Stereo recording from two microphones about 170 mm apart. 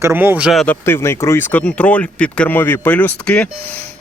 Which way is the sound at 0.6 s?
15° left (ahead or behind).